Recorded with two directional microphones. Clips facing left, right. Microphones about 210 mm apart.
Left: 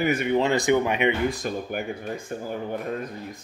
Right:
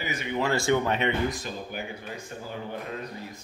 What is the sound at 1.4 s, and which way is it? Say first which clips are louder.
Speech: left 6 dB; 50° left (ahead or behind).